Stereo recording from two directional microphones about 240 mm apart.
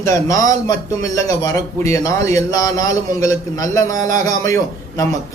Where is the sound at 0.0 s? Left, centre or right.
Centre.